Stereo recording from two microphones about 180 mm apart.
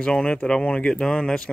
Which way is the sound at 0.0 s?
5° left (ahead or behind).